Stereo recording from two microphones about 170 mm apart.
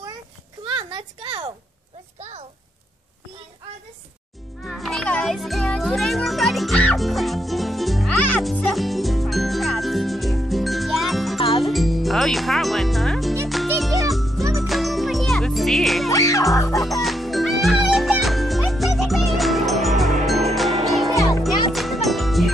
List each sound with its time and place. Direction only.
0.7 s a sound: 30° right (ahead or behind)
2.1 s a sound: 40° right (ahead or behind)
4.6 s music: centre (ahead or behind)
11.3 s music: 30° left (ahead or behind)
11.6 s music: centre (ahead or behind)
16.1 s music: 20° left (ahead or behind)
16.7 s music: centre (ahead or behind)
21.1 s music: 20° left (ahead or behind)
21.7 s music: centre (ahead or behind)